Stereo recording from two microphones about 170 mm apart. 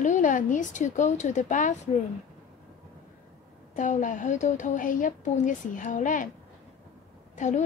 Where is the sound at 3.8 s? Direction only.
45° left (ahead or behind).